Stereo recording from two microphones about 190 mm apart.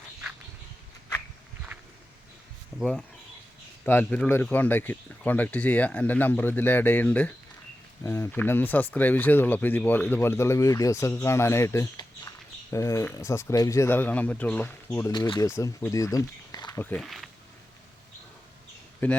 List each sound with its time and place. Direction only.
3.8 s speech: 10° left (ahead or behind)
16.8 s speech: 5° left (ahead or behind)
19.0 s speech: 10° left (ahead or behind)